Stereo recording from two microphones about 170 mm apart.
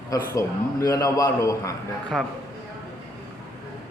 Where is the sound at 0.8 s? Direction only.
20° left (ahead or behind).